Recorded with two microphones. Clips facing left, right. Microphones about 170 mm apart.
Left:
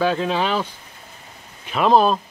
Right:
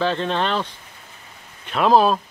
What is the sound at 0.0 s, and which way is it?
Speech, 5° left (ahead or behind).